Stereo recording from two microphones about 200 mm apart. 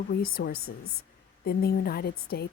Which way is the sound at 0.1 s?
50° left (ahead or behind).